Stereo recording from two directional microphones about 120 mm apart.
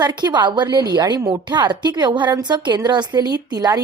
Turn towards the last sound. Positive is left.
turn(degrees=-30)  # may be behind; listen again after turning